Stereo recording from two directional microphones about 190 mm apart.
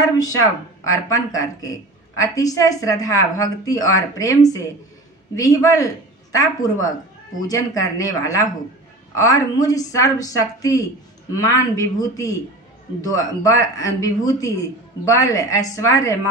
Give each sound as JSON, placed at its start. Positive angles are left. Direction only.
{"t": 0.0, "sound": "a woman's voice", "side_deg": 20}